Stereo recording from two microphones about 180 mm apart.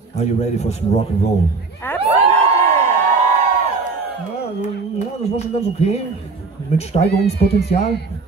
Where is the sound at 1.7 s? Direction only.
10° left (ahead or behind).